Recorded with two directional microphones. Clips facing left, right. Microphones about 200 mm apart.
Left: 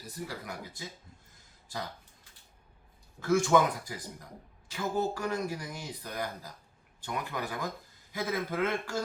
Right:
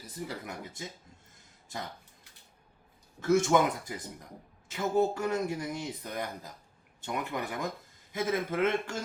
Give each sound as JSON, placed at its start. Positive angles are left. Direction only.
{"t": 0.3, "sound": "speech", "side_deg": -25}
{"t": 3.2, "sound": "speech", "side_deg": -20}